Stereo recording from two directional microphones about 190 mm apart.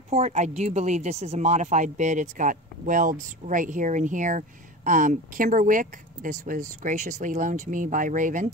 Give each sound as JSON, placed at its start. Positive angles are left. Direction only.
{"t": 0.1, "sound": "speech", "side_deg": -35}